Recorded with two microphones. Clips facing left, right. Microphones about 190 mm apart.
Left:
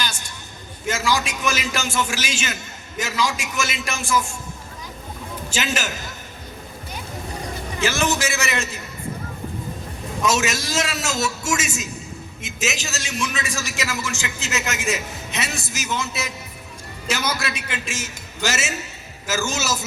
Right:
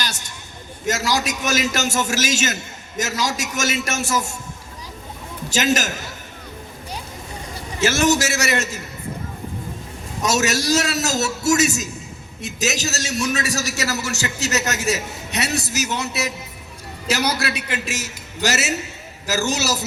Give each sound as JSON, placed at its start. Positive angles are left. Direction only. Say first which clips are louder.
{"t": 0.9, "sound": "a man's voice", "louder": "right 1 dB", "side_deg": -40}
{"t": 5.5, "sound": "a man's voice", "louder": "right 6 dB", "side_deg": -40}
{"t": 7.8, "sound": "a man's voice", "louder": "right 4 dB", "side_deg": -40}
{"t": 10.2, "sound": "a man's voice", "louder": "right 3 dB", "side_deg": -40}